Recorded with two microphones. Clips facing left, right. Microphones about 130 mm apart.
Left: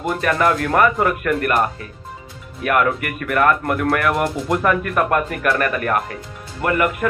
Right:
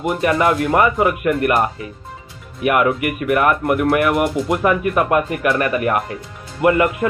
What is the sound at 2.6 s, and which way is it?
Speech, 15° right (ahead or behind).